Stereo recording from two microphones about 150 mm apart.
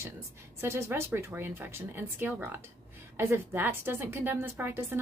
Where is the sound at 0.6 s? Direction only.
15° right (ahead or behind).